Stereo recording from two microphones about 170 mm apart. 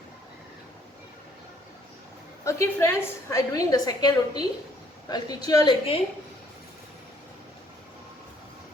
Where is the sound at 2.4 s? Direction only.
15° left (ahead or behind).